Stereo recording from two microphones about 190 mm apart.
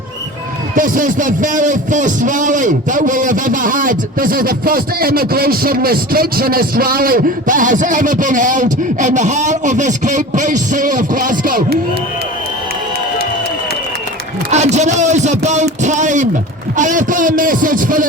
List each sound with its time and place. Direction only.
0.8 s a man's voice: 45° right (ahead or behind)
14.5 s a man's voice: 35° right (ahead or behind)